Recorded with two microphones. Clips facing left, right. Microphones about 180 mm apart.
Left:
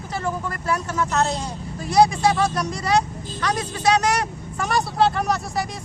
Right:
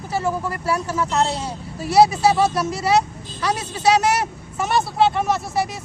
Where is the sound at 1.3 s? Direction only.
10° right (ahead or behind).